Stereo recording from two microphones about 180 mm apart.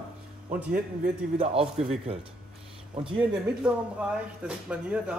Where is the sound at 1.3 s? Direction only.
40° right (ahead or behind).